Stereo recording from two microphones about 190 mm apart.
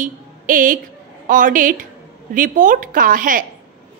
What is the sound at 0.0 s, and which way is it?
A woman's voice, 45° right (ahead or behind).